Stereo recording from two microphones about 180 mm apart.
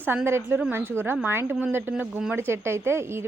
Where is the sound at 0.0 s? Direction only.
10° right (ahead or behind).